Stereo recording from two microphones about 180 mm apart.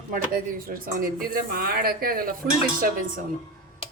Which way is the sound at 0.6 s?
50° right (ahead or behind).